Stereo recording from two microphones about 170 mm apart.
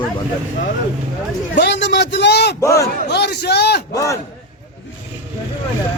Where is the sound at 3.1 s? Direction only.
75° left (ahead or behind).